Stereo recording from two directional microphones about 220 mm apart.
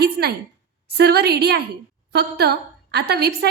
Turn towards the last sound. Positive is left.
turn(degrees=-50)  # may be behind; listen again after turning